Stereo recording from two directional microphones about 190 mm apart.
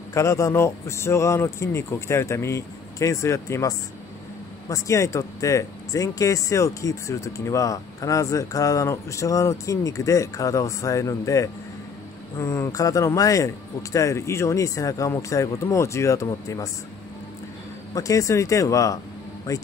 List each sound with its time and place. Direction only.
0.1 s speech: 15° left (ahead or behind)
17.9 s speech: 15° left (ahead or behind)